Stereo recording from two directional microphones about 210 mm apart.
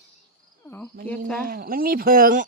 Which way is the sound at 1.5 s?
45° right (ahead or behind).